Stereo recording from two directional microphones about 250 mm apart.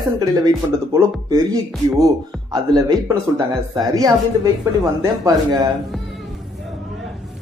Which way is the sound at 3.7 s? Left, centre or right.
Centre.